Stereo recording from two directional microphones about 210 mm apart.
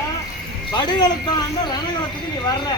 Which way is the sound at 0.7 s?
20° left (ahead or behind).